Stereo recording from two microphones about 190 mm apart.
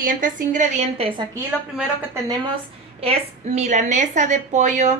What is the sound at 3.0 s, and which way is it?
A woman's voice, 35° right (ahead or behind).